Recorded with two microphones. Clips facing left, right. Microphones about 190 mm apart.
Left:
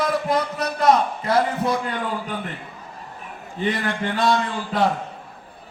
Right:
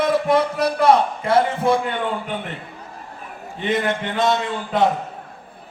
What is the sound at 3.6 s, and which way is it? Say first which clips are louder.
Speech: right 3 dB; 20° right (ahead or behind).